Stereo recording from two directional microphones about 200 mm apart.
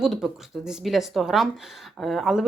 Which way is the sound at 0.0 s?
Centre (ahead or behind).